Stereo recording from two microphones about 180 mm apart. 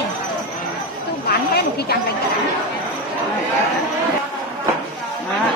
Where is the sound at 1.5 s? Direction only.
60° left (ahead or behind).